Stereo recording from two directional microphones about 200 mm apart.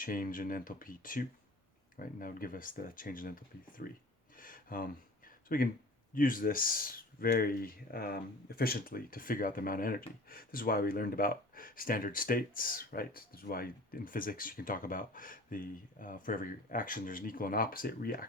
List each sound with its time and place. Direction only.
0.0 s speech: 45° left (ahead or behind)
4.4 s a sound: 45° left (ahead or behind)
5.5 s speech: 45° left (ahead or behind)